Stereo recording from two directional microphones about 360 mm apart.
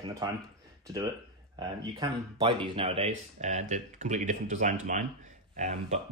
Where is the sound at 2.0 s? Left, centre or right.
Centre.